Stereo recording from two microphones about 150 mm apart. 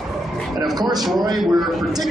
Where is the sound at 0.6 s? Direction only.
25° right (ahead or behind).